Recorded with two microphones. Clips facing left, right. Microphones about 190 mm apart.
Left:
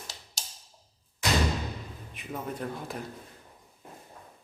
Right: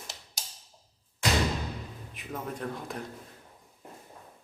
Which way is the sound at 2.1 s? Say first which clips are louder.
Left 1 dB; centre (ahead or behind).